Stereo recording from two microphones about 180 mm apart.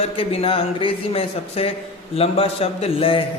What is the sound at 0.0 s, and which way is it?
Speech, 30° left (ahead or behind).